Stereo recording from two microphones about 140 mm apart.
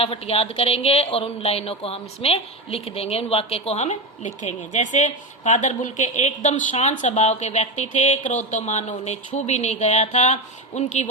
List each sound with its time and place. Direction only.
0.0 s speech: 45° left (ahead or behind)